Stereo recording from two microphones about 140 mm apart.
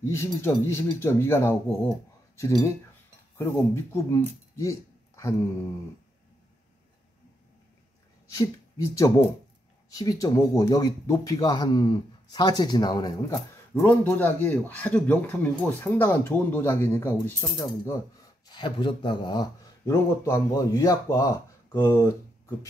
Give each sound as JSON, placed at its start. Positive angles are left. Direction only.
{"t": 0.0, "sound": "speech", "side_deg": 20}
{"t": 3.3, "sound": "speech", "side_deg": 20}
{"t": 8.3, "sound": "speech", "side_deg": 25}
{"t": 13.8, "sound": "a man's voice", "side_deg": 15}
{"t": 18.5, "sound": "speech", "side_deg": 35}
{"t": 19.9, "sound": "speech", "side_deg": 20}